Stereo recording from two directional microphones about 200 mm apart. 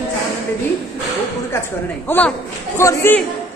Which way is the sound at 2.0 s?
10° left (ahead or behind).